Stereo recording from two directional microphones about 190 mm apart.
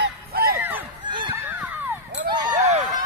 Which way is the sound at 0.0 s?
50° right (ahead or behind).